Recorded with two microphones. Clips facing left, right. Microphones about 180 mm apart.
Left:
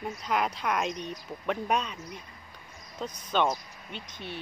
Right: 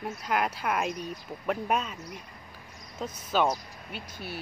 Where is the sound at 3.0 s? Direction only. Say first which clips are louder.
Right 1 dB; 5° right (ahead or behind).